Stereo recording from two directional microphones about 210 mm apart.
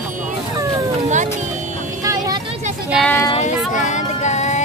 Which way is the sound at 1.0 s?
35° right (ahead or behind).